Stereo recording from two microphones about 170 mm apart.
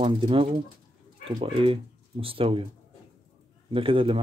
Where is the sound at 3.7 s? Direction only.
30° right (ahead or behind).